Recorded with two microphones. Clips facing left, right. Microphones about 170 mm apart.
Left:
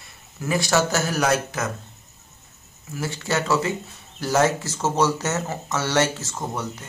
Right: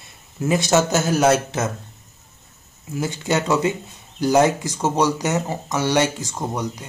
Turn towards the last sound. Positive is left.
turn(degrees=-15)  # may be behind; listen again after turning